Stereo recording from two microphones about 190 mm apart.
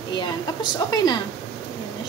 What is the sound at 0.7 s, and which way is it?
Speech, 20° left (ahead or behind).